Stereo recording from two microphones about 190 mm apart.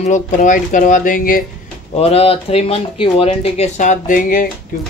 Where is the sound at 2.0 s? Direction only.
30° left (ahead or behind).